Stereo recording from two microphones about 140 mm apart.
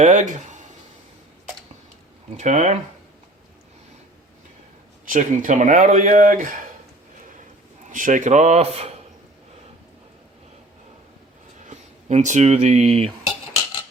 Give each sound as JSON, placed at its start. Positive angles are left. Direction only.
{"t": 0.0, "sound": "speech", "side_deg": -60}
{"t": 2.3, "sound": "speech", "side_deg": -60}
{"t": 5.0, "sound": "speech", "side_deg": -70}
{"t": 7.9, "sound": "speech", "side_deg": -70}
{"t": 11.6, "sound": "speech", "side_deg": -55}